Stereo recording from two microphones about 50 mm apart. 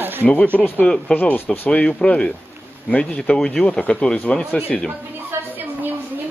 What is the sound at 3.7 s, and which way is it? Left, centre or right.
Speech, left.